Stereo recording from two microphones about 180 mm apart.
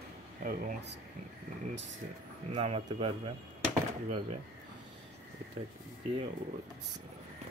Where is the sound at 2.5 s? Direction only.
35° right (ahead or behind).